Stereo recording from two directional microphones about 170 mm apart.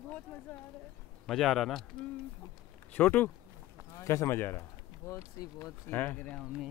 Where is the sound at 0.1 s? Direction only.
5° left (ahead or behind).